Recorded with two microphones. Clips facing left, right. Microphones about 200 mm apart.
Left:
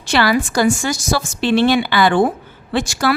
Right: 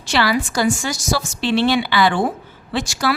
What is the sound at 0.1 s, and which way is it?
A woman's voice, 50° left (ahead or behind).